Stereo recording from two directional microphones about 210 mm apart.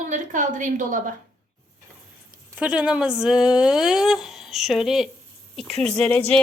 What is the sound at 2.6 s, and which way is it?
A woman's voice, 5° right (ahead or behind).